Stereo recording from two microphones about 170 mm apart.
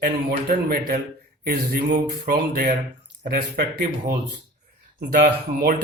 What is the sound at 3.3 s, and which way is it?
Speech, 60° right (ahead or behind).